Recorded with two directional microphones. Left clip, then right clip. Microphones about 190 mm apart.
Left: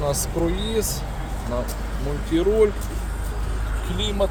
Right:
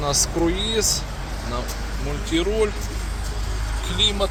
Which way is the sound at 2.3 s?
30° left (ahead or behind).